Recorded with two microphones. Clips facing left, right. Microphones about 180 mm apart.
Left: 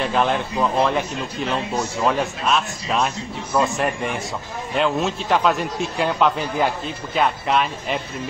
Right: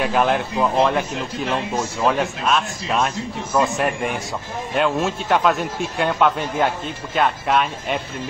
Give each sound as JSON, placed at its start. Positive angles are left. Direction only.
{"t": 0.0, "sound": "speech", "side_deg": -5}